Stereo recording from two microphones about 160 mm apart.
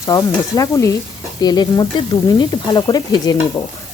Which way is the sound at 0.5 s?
20° left (ahead or behind).